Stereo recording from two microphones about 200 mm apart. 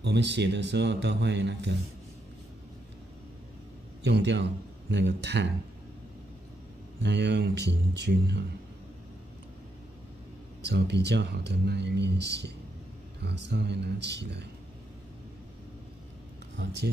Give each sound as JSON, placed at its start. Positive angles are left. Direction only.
{"t": 0.0, "sound": "speech", "side_deg": -60}
{"t": 4.0, "sound": "a man's voice", "side_deg": -60}
{"t": 7.0, "sound": "speech", "side_deg": -60}
{"t": 10.6, "sound": "speech", "side_deg": -60}
{"t": 16.6, "sound": "speech", "side_deg": -60}